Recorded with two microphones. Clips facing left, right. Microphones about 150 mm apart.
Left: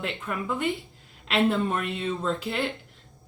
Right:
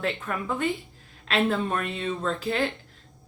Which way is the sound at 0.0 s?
20° left (ahead or behind).